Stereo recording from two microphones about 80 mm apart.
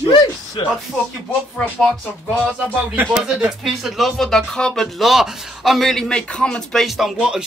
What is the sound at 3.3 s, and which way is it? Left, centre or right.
A man's voice, centre.